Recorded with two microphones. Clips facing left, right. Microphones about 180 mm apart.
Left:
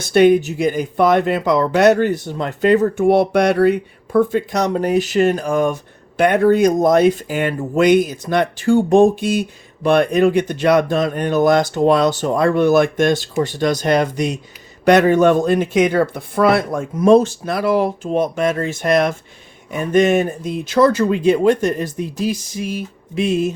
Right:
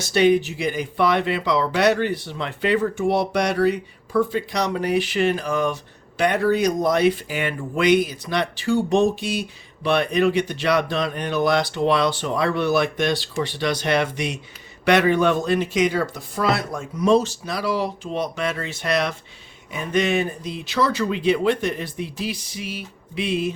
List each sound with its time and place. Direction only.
0.1 s speech: 50° left (ahead or behind)